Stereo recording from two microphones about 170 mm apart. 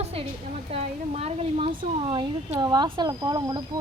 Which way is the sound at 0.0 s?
35° right (ahead or behind).